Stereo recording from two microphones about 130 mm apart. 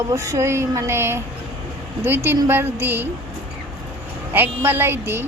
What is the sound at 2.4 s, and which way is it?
Speech, 15° right (ahead or behind).